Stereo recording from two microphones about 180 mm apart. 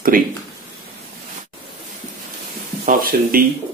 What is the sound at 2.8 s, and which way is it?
Speech, 50° right (ahead or behind).